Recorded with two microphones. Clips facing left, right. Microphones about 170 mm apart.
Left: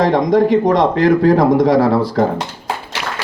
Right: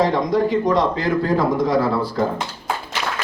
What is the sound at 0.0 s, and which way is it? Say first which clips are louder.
Speech: left 5 dB; 85° left.